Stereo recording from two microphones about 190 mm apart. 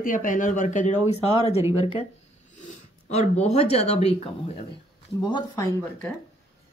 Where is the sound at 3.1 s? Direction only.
35° left (ahead or behind).